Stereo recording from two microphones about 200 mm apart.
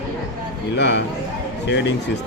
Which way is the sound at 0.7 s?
60° left (ahead or behind).